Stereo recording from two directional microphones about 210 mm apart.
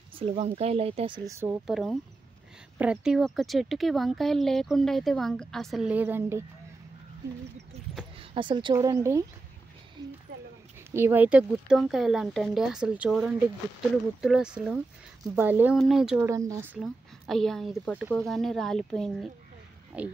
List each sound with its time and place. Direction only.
0.1 s speech: 25° right (ahead or behind)
1.7 s speech: centre (ahead or behind)
8.2 s speech: 25° right (ahead or behind)
10.3 s a sound: 50° right (ahead or behind)
10.9 s speech: 10° right (ahead or behind)
16.3 s speech: 15° right (ahead or behind)